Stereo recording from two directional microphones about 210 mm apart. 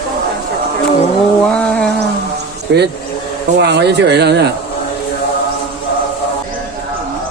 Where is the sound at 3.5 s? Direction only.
55° right (ahead or behind).